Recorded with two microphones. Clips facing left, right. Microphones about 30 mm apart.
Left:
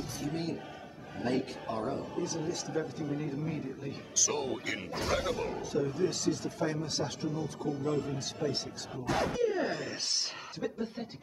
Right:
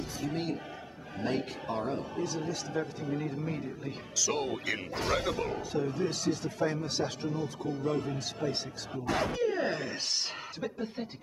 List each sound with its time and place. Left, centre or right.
0.2 s speech: centre